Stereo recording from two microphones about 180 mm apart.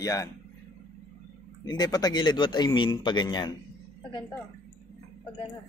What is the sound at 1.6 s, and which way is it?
A man's voice, 20° left (ahead or behind).